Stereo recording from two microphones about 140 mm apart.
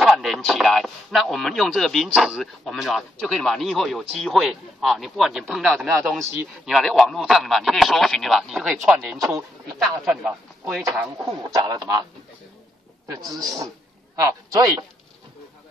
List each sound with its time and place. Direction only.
0.0 s speech: centre (ahead or behind)
11.2 s a man's voice: 25° right (ahead or behind)
13.4 s a man's voice: 25° right (ahead or behind)